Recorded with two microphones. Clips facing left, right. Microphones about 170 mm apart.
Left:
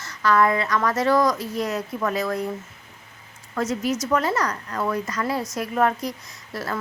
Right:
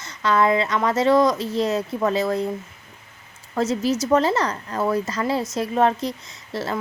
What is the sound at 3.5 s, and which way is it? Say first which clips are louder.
Speech: right 3 dB; 30° right (ahead or behind).